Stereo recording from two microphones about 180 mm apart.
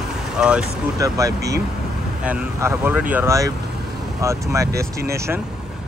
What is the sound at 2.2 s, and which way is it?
Speech, 5° right (ahead or behind).